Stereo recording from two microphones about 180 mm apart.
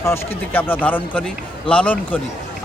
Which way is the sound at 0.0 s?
15° left (ahead or behind).